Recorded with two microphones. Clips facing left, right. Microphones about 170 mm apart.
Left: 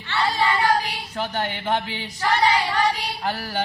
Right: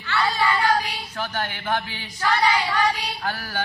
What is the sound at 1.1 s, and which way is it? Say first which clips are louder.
Music: left 3 dB; 20° left (ahead or behind).